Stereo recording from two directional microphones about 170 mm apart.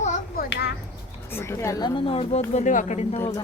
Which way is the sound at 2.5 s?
45° left (ahead or behind).